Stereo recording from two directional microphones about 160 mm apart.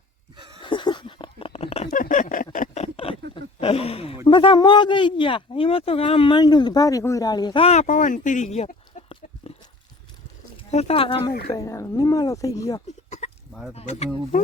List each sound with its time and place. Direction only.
0.6 s a sound: 30° left (ahead or behind)
3.6 s speech: 35° left (ahead or behind)
10.7 s speech: 40° left (ahead or behind)
11.5 s speech: 20° left (ahead or behind)
13.1 s sheep: 45° left (ahead or behind)
13.5 s chicken: centre (ahead or behind)
14.3 s speech: 50° left (ahead or behind)